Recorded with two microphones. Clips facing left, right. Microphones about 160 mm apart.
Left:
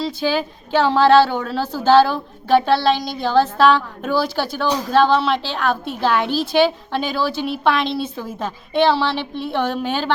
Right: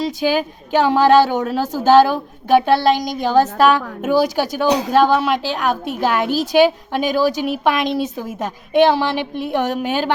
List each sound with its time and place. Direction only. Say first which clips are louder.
0.0 s a woman's voice: right 2 dB; 15° right (ahead or behind)
1.6 s a woman's voice: right 3 dB; 45° right (ahead or behind)
1.9 s a woman's voice: right 2 dB; 15° right (ahead or behind)